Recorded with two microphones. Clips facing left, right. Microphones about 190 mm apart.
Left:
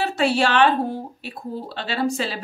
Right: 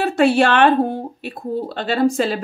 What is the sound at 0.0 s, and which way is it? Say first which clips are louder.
A woman's voice: right 5 dB; 55° right (ahead or behind).